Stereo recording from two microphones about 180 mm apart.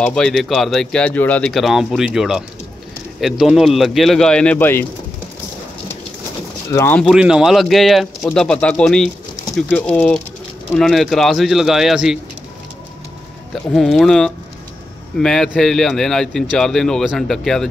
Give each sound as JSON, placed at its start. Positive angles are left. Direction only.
{"t": 0.0, "sound": "speech", "side_deg": 5}
{"t": 6.7, "sound": "speech", "side_deg": 15}
{"t": 7.0, "sound": "speech", "side_deg": -5}
{"t": 13.7, "sound": "speech", "side_deg": 0}